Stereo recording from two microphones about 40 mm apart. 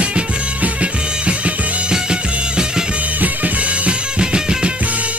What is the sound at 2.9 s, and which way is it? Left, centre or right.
Music, right.